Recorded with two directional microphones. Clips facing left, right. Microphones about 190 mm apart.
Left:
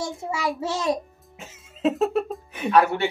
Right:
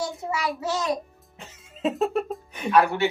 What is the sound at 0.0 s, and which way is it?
Speech, 25° left (ahead or behind).